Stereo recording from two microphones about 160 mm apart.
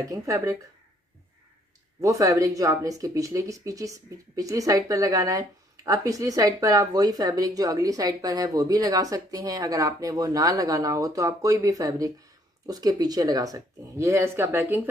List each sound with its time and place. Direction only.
0.0 s a woman's voice: 20° right (ahead or behind)
2.0 s a woman's voice: 20° right (ahead or behind)